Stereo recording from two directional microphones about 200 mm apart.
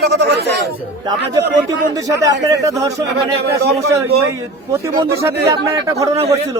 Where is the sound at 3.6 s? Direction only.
55° right (ahead or behind).